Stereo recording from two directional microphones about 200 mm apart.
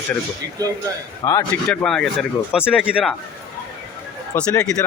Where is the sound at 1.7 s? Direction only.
5° left (ahead or behind).